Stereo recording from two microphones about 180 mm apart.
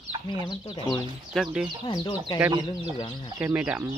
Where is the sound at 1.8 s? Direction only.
25° left (ahead or behind).